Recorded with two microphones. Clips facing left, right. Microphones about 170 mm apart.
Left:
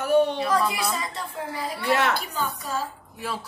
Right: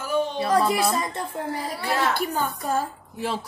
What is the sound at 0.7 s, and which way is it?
A woman's voice, 55° right (ahead or behind).